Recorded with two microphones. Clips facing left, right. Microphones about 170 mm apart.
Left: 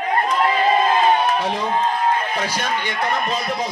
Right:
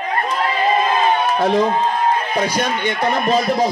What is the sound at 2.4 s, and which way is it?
Speech, 20° right (ahead or behind).